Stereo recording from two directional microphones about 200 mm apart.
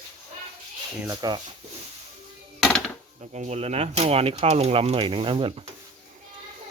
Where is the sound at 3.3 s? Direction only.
35° right (ahead or behind).